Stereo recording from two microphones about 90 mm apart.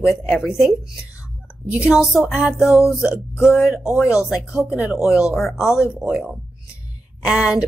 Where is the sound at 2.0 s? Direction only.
Centre (ahead or behind).